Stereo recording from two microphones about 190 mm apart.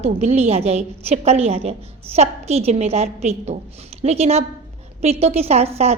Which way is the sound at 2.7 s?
35° right (ahead or behind).